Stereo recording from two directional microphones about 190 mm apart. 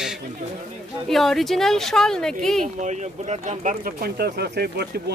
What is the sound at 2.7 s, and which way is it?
Speech, 40° right (ahead or behind).